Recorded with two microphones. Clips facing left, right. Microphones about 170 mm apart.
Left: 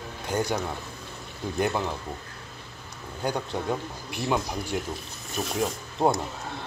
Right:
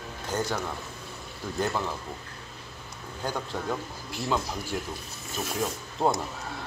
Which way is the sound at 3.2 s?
15° left (ahead or behind).